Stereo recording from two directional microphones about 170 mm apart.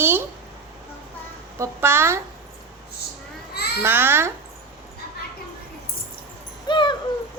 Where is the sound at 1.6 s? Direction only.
15° right (ahead or behind).